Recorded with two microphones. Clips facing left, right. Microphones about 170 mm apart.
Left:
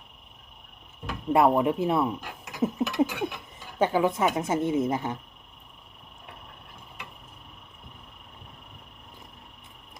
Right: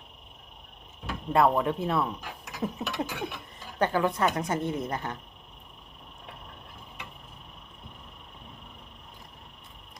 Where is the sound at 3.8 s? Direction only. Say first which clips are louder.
Left 2 dB; 15° left (ahead or behind).